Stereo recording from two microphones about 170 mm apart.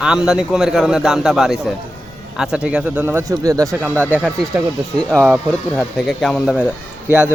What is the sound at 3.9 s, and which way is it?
Speech, 10° left (ahead or behind).